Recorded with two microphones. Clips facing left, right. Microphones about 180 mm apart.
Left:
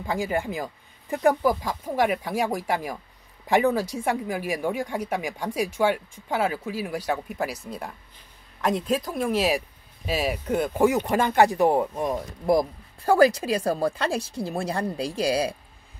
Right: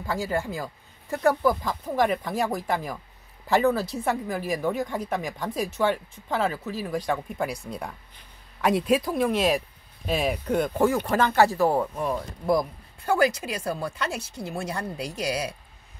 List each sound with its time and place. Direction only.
0.0 s speech: 15° left (ahead or behind)
13.0 s a woman's voice: 35° left (ahead or behind)